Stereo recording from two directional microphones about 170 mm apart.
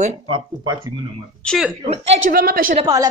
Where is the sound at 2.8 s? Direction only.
20° right (ahead or behind).